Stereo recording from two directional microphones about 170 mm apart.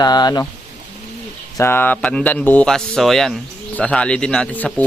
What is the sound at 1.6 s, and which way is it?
Speech, 10° left (ahead or behind).